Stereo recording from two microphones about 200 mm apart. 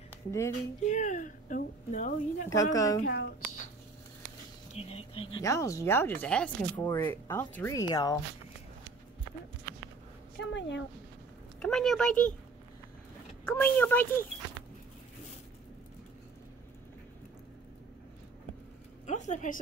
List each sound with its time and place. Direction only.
0.3 s speech: 15° left (ahead or behind)
0.8 s speech: 40° left (ahead or behind)
2.5 s speech: 15° left (ahead or behind)
3.1 s speech: 60° left (ahead or behind)
4.7 s speech: 30° left (ahead or behind)
5.4 s speech: 15° left (ahead or behind)
10.3 s speech: 60° left (ahead or behind)
11.6 s speech: centre (ahead or behind)
13.5 s speech: 10° left (ahead or behind)
19.0 s a sound: 35° left (ahead or behind)